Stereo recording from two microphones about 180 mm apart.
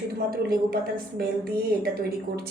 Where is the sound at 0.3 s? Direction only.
55° right (ahead or behind).